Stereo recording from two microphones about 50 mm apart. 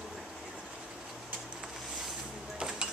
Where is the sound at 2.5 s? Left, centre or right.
Centre.